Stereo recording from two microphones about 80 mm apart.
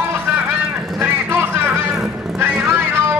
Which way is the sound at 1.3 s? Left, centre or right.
Right.